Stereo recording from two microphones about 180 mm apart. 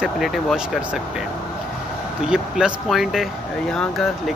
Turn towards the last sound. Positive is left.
turn(degrees=0)  # may be behind; listen again after turning